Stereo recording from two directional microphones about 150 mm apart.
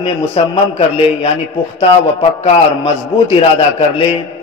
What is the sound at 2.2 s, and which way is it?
A man's voice, 45° left (ahead or behind).